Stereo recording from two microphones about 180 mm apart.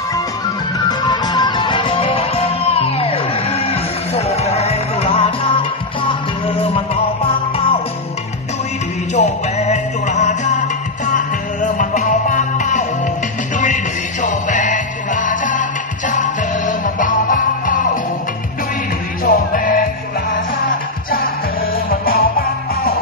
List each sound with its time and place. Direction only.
0.8 s music: 25° left (ahead or behind)
7.5 s music: 30° left (ahead or behind)
9.1 s music: 40° left (ahead or behind)
14.2 s music: 45° left (ahead or behind)
19.2 s music: 50° left (ahead or behind)
22.0 s music: 55° left (ahead or behind)